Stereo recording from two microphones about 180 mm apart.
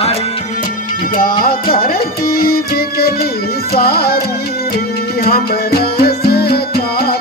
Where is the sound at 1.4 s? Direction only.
55° left (ahead or behind).